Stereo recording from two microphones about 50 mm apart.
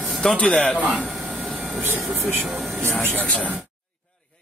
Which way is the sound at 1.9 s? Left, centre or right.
Right.